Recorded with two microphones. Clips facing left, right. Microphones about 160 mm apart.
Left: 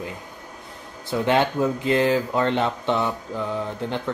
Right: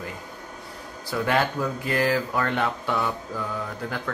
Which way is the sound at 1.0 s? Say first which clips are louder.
Left 3 dB; 20° left (ahead or behind).